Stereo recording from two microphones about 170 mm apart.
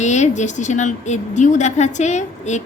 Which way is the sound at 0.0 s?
45° left (ahead or behind).